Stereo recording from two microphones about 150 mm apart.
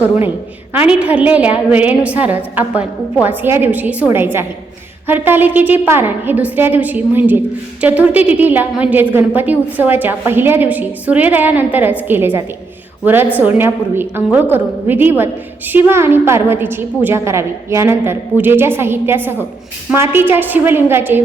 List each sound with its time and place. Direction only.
0.7 s a woman's voice: 10° right (ahead or behind)